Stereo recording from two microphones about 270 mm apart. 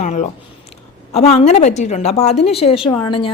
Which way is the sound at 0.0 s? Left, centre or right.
Left.